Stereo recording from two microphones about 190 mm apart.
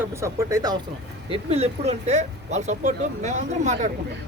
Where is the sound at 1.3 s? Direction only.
30° right (ahead or behind).